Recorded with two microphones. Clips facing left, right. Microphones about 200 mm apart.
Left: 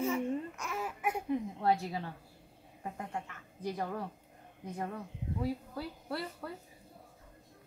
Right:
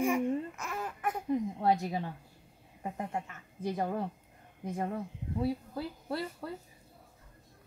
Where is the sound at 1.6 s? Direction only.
20° right (ahead or behind).